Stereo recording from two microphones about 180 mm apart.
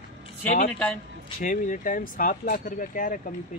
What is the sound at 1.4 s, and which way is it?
Speech, 45° left (ahead or behind).